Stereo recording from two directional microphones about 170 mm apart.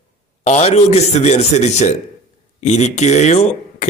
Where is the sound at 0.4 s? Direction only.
40° left (ahead or behind).